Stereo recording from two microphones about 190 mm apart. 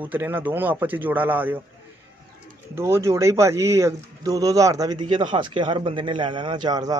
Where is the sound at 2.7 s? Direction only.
15° right (ahead or behind).